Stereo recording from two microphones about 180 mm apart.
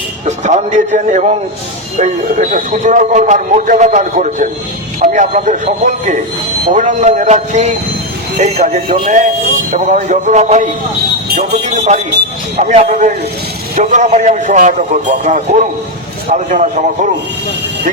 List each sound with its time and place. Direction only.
0.3 s a man's voice: 40° right (ahead or behind)